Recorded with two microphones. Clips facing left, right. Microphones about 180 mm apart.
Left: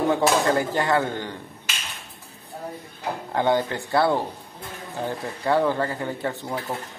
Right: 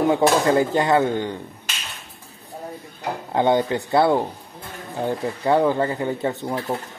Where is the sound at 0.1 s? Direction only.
20° right (ahead or behind).